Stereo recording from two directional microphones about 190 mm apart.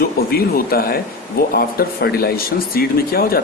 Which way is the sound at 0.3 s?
50° left (ahead or behind).